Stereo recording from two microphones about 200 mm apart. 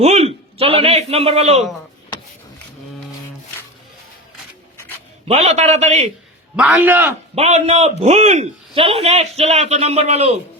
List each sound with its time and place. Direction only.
0.0 s a sound: 35° right (ahead or behind)
5.3 s a man's voice: 30° right (ahead or behind)
6.6 s a man's voice: 5° right (ahead or behind)
7.3 s a man's voice: 30° right (ahead or behind)